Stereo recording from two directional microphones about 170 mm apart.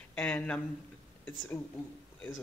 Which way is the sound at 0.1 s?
5° left (ahead or behind).